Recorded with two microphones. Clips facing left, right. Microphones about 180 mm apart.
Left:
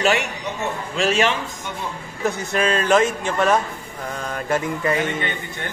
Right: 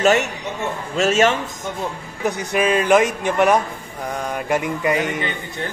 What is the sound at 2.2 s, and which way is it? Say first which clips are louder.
A man's voice: right 2 dB; 10° right (ahead or behind).